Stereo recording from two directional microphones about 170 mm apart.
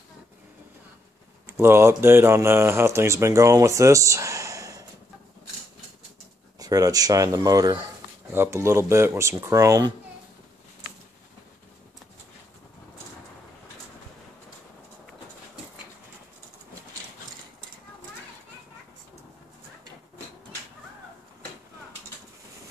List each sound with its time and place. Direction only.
1.6 s speech: 15° right (ahead or behind)
6.6 s speech: 20° right (ahead or behind)